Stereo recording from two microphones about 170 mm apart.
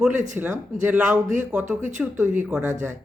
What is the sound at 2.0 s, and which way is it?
Speech, 10° right (ahead or behind).